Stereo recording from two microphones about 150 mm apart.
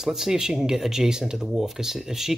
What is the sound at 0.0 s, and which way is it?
Speech, 5° right (ahead or behind).